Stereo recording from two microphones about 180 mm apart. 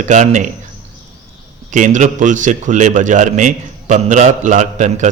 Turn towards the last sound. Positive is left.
turn(degrees=-40)  # may be behind; listen again after turning